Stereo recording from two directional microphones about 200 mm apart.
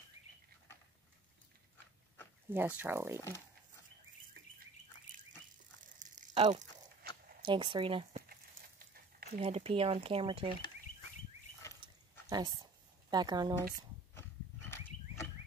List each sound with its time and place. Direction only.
2.5 s speech: 10° right (ahead or behind)
3.2 s speech: 15° left (ahead or behind)
5.9 s crunch: 40° right (ahead or behind)
7.4 s speech: 25° right (ahead or behind)
8.3 s a sound: 45° right (ahead or behind)
9.4 s speech: 30° right (ahead or behind)
11.8 s a sound: 20° right (ahead or behind)
13.1 s speech: 20° right (ahead or behind)
14.1 s a sound: 10° left (ahead or behind)